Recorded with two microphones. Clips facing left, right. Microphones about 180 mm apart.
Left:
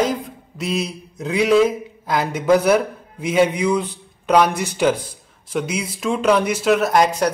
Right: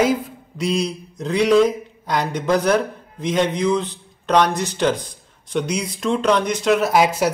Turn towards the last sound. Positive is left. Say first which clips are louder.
# even
turn(degrees=-5)  # may be behind; listen again after turning